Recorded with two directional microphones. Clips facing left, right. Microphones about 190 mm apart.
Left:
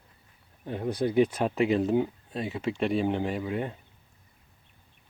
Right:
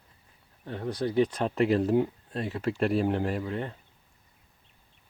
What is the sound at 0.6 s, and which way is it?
Speech, 15° left (ahead or behind).